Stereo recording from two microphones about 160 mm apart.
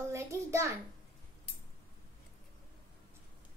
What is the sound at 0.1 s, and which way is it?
Speech, 15° right (ahead or behind).